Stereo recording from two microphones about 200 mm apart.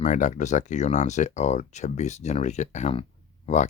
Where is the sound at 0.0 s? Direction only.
35° left (ahead or behind).